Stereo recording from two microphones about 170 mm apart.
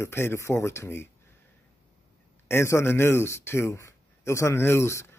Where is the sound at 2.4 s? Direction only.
15° left (ahead or behind).